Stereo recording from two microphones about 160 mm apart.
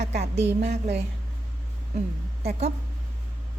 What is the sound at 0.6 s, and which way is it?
Speech, 90° right.